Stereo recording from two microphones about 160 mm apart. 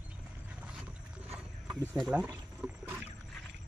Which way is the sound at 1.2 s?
5° right (ahead or behind).